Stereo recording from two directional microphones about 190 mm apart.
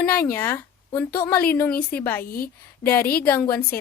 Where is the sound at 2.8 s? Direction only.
10° left (ahead or behind).